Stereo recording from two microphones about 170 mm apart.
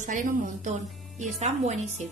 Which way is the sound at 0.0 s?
50° right (ahead or behind).